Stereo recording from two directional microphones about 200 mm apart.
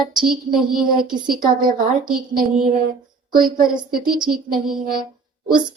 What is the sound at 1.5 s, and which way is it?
A woman's voice, 45° right (ahead or behind).